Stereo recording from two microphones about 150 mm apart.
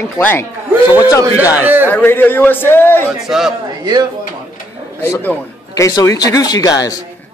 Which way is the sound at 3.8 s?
25° right (ahead or behind).